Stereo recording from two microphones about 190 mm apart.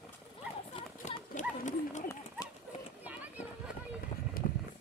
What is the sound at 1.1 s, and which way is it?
Clip-clop, 40° left (ahead or behind).